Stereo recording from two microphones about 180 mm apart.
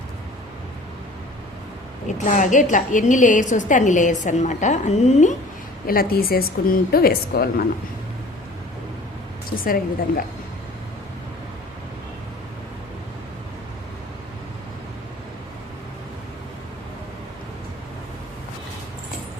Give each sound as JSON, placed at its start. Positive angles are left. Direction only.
{"t": 2.0, "sound": "a woman's voice", "side_deg": 45}
{"t": 5.8, "sound": "a woman's voice", "side_deg": 55}
{"t": 9.6, "sound": "a woman's voice", "side_deg": 55}